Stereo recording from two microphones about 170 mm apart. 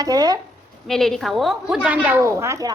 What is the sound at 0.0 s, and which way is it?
Speech, 20° right (ahead or behind).